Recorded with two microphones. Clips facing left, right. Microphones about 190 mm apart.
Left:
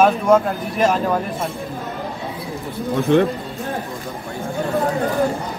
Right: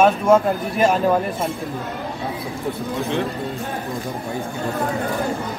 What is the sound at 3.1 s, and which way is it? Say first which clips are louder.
Speech: left 9 dB; 55° left (ahead or behind).